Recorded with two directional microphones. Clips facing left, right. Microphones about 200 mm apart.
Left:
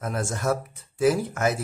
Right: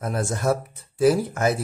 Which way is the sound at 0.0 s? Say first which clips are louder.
Right 3 dB; 35° right (ahead or behind).